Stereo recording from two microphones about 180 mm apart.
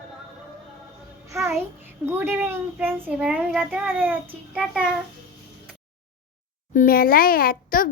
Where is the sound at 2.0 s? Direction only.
15° right (ahead or behind).